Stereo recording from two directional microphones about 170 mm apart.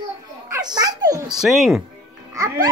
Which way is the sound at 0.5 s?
25° right (ahead or behind).